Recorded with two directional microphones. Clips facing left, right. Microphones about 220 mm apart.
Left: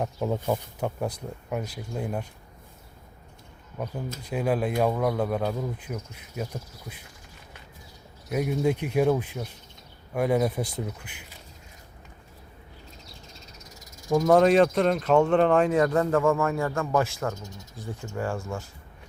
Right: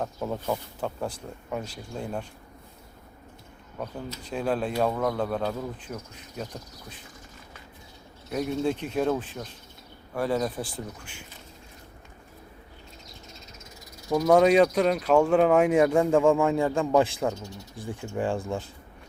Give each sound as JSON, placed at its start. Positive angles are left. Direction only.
{"t": 0.0, "sound": "speech", "side_deg": 15}
{"t": 4.3, "sound": "speech", "side_deg": 10}
{"t": 8.3, "sound": "speech", "side_deg": 10}
{"t": 14.3, "sound": "speech", "side_deg": 0}
{"t": 18.3, "sound": "speech", "side_deg": -30}